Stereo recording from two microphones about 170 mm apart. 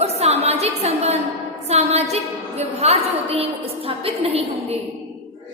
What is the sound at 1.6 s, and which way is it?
A woman's voice, 40° right (ahead or behind).